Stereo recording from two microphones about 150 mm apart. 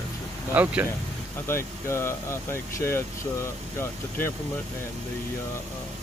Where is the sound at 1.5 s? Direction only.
15° left (ahead or behind).